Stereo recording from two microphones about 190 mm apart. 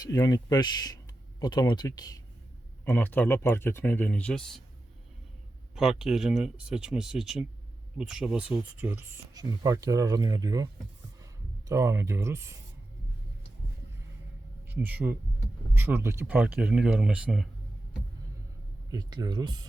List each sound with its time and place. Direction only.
0.0 s speech: 20° left (ahead or behind); by 4.6 s 5° left (ahead or behind)
5.7 s speech: centre (ahead or behind); by 10.7 s 20° right (ahead or behind)
11.7 s speech: 15° right (ahead or behind)
14.7 s speech: 10° right (ahead or behind)
18.9 s speech: 20° right (ahead or behind)